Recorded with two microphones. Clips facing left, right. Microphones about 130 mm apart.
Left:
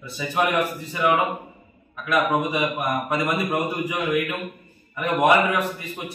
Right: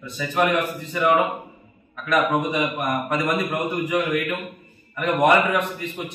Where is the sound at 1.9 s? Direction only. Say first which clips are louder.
Right 1 dB; 10° left (ahead or behind).